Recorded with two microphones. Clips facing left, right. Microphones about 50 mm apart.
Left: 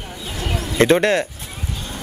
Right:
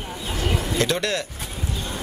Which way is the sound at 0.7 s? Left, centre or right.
Left.